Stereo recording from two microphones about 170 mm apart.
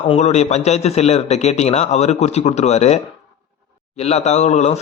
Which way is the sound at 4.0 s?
40° left (ahead or behind).